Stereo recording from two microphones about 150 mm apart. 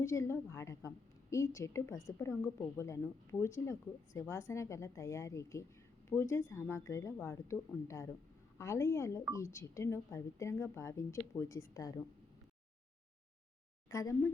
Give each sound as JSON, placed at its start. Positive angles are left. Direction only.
{"t": 0.0, "sound": "a woman's voice", "side_deg": 20}
{"t": 13.9, "sound": "a woman's voice", "side_deg": 20}